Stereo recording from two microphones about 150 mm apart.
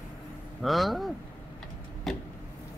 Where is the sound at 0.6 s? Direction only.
Centre (ahead or behind).